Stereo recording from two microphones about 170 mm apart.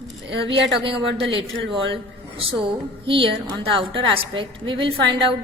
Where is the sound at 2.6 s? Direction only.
30° right (ahead or behind).